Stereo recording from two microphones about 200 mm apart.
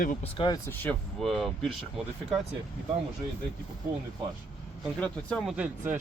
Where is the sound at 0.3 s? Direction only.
20° left (ahead or behind).